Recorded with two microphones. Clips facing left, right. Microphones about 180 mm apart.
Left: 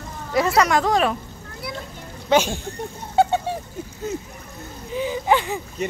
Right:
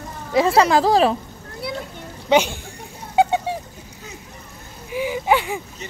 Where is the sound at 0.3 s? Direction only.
25° right (ahead or behind).